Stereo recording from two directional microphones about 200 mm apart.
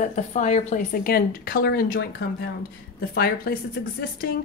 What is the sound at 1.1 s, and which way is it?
A woman's voice, 50° left (ahead or behind).